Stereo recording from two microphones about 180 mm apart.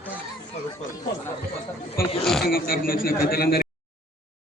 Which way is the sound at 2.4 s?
55° left (ahead or behind).